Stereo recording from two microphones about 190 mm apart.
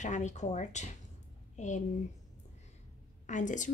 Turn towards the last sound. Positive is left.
turn(degrees=40)  # may be behind; listen again after turning